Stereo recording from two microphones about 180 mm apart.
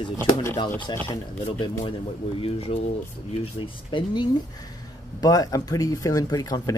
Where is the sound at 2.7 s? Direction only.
35° left (ahead or behind).